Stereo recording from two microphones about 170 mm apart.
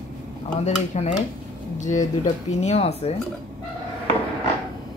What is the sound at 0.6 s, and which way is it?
Speech, 40° left (ahead or behind).